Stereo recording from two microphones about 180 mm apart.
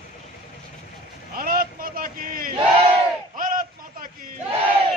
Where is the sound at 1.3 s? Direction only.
55° right (ahead or behind).